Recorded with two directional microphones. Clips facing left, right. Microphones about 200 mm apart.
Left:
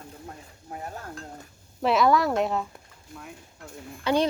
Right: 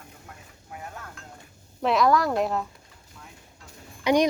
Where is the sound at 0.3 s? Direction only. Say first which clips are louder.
Left 3 dB; 35° left (ahead or behind).